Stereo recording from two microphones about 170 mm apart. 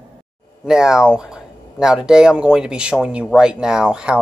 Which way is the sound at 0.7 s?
5° right (ahead or behind).